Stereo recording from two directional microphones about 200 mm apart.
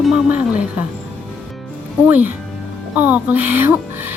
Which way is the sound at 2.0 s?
10° right (ahead or behind).